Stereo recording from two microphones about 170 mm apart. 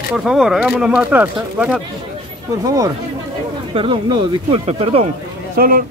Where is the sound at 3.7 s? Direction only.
30° right (ahead or behind).